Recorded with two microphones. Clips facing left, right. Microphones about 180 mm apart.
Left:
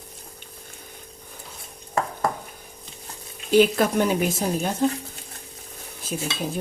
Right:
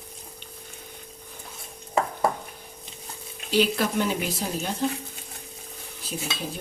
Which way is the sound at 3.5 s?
50° left (ahead or behind).